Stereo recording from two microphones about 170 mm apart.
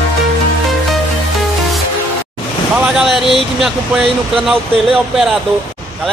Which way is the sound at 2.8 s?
5° right (ahead or behind).